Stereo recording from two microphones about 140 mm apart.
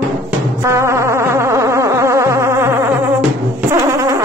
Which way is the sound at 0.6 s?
20° right (ahead or behind).